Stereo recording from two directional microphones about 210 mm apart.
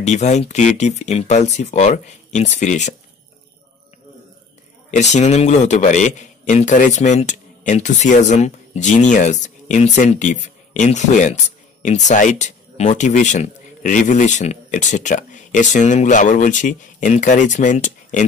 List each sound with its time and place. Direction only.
0.0 s speech: 35° left (ahead or behind)
4.9 s speech: 35° left (ahead or behind)